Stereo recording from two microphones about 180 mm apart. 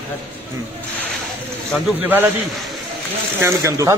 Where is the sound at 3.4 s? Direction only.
15° right (ahead or behind).